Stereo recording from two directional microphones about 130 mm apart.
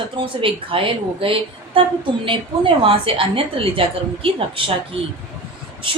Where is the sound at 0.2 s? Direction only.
40° right (ahead or behind).